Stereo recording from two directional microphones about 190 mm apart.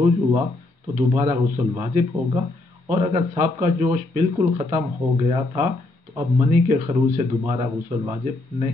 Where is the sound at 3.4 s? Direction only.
40° right (ahead or behind).